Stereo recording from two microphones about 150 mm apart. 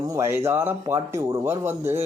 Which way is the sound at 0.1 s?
15° right (ahead or behind).